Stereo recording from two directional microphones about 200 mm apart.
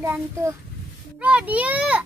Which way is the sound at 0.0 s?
15° right (ahead or behind).